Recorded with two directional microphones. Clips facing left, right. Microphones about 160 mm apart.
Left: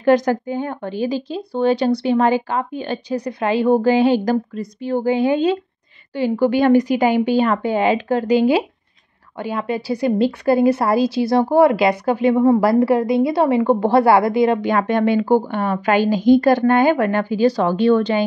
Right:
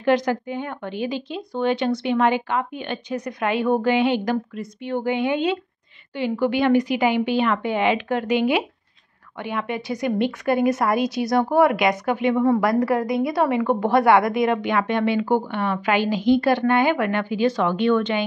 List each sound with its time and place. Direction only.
0.0 s a woman's voice: 45° left (ahead or behind)